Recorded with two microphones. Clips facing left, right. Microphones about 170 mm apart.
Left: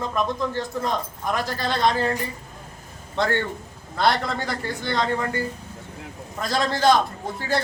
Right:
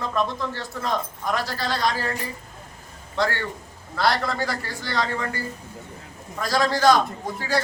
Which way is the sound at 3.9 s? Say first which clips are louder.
Left 1 dB; 20° left (ahead or behind).